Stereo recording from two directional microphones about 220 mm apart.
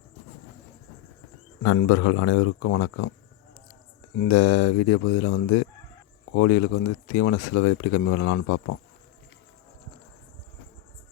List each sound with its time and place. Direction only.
1.6 s speech: 80° left
4.3 s speech: 55° left (ahead or behind)